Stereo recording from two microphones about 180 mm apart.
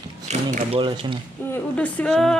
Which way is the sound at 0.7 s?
30° right (ahead or behind).